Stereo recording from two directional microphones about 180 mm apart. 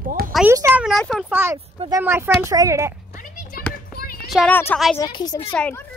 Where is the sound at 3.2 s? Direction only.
55° left (ahead or behind).